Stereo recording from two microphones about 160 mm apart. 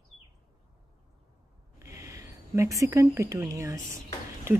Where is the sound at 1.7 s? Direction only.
20° right (ahead or behind).